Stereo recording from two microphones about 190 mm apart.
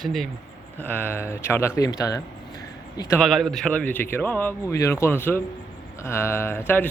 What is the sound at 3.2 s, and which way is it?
A man's voice, centre (ahead or behind).